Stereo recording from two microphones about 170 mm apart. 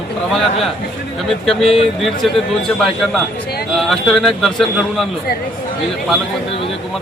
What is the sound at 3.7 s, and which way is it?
Speech, centre (ahead or behind).